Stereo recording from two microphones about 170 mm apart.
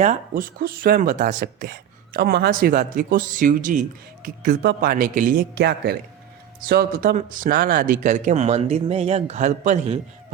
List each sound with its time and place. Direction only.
0.0 s speech: 50° right (ahead or behind)
5.5 s speech: 70° right (ahead or behind)
6.7 s speech: 60° right (ahead or behind); by 10.0 s 40° right (ahead or behind)